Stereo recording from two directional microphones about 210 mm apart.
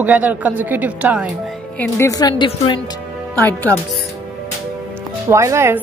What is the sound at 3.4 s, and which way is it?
Speech, 10° left (ahead or behind).